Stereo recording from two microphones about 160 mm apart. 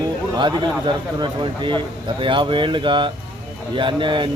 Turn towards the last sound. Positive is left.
turn(degrees=-30)  # may be behind; listen again after turning